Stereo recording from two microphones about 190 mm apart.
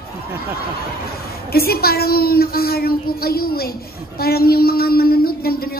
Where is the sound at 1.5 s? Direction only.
55° left (ahead or behind).